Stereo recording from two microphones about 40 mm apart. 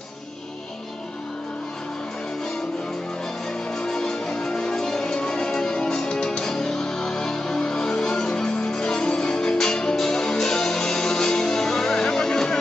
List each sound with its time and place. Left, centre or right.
3.7 s music: centre